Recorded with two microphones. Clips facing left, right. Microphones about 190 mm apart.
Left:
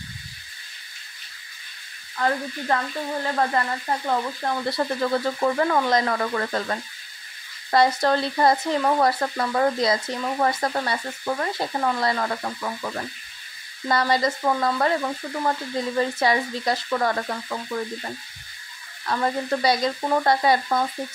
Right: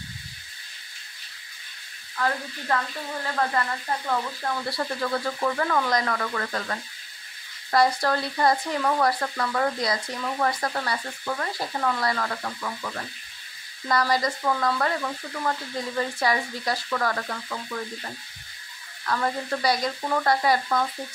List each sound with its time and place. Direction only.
2.1 s speech: 30° left (ahead or behind)
19.0 s speech: 25° left (ahead or behind)